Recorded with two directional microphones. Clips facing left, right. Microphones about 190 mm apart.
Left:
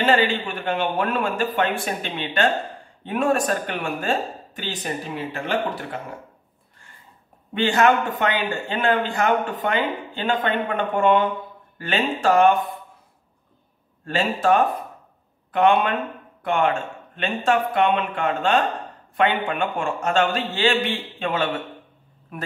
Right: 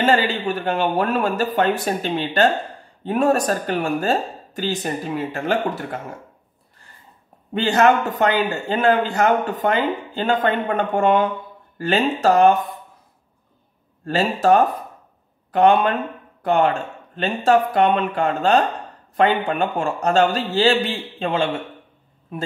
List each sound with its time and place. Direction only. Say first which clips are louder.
0.0 s a man's voice: right 1 dB; 40° right (ahead or behind)
7.5 s a man's voice: right 2 dB; 40° right (ahead or behind)
14.0 s a man's voice: right 3 dB; 40° right (ahead or behind)